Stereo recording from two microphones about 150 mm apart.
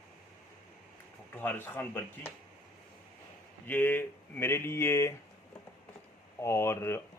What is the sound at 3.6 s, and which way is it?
Speech, 15° left (ahead or behind).